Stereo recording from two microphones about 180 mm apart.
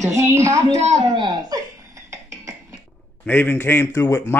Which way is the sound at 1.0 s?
20° right (ahead or behind).